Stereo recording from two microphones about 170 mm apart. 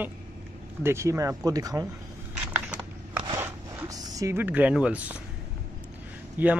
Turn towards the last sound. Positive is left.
turn(degrees=-10)  # may be behind; listen again after turning